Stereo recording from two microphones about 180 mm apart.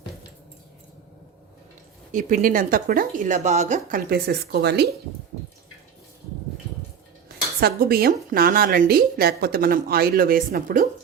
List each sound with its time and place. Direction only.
2.1 s speech: 45° right (ahead or behind); by 4.9 s 65° right (ahead or behind)
7.6 s a woman's voice: 55° right (ahead or behind)